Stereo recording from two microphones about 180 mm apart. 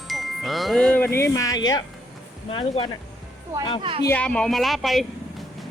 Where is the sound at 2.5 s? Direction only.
30° left (ahead or behind).